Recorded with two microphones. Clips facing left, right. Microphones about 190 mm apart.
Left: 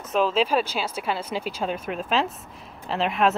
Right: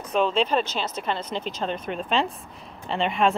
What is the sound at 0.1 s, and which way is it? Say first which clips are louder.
Speech: left 1 dB; 5° left (ahead or behind).